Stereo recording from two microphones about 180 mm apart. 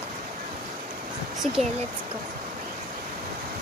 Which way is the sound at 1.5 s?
40° right (ahead or behind).